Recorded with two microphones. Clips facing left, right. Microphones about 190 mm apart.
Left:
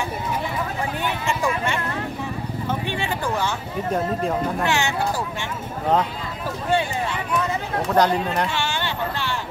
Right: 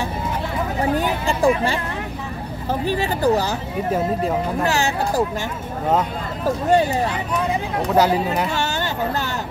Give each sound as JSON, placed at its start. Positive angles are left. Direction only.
{"t": 0.9, "sound": "a sound", "side_deg": -35}
{"t": 2.7, "sound": "speech", "side_deg": -40}
{"t": 4.6, "sound": "speech", "side_deg": -35}
{"t": 6.4, "sound": "speech", "side_deg": -40}
{"t": 7.9, "sound": "speech", "side_deg": -5}
{"t": 8.5, "sound": "speech", "side_deg": -40}